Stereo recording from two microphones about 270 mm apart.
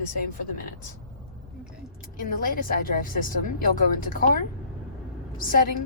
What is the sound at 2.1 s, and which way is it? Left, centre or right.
A woman's voice, left.